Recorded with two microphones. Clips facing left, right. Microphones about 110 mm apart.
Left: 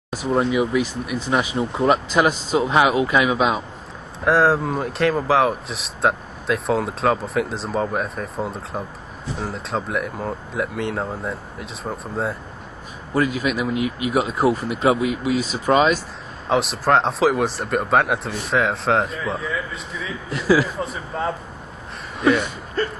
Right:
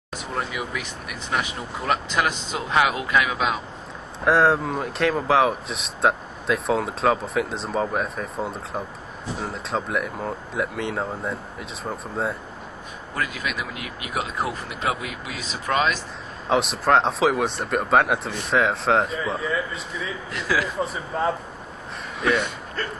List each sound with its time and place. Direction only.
0.2 s speech: 25° left (ahead or behind)
4.2 s speech: centre (ahead or behind)
13.1 s speech: 25° left (ahead or behind)
14.9 s speech: 25° left (ahead or behind)
16.4 s speech: centre (ahead or behind)